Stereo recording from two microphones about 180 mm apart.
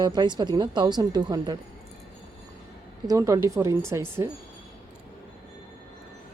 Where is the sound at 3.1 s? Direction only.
15° right (ahead or behind).